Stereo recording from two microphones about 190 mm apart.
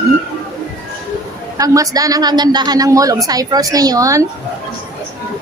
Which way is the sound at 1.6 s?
20° right (ahead or behind).